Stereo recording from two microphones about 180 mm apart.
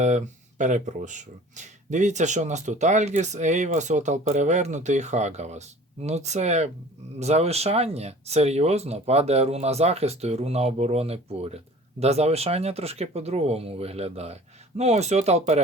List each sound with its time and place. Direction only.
0.0 s speech: 40° right (ahead or behind)